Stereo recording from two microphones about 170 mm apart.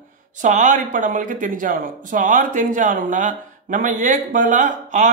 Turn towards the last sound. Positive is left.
turn(degrees=-45)  # may be behind; listen again after turning